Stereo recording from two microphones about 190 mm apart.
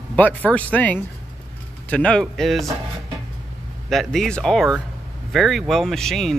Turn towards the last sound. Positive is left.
turn(degrees=0)  # may be behind; listen again after turning